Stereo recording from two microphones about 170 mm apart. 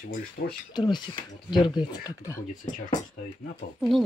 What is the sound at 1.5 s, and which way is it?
Speech, 25° left (ahead or behind).